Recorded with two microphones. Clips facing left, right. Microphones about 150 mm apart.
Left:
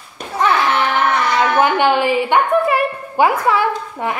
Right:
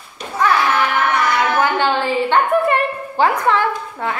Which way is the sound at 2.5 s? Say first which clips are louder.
Left 1 dB; centre (ahead or behind).